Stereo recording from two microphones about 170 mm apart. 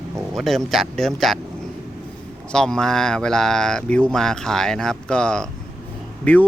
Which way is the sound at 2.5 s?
5° left (ahead or behind).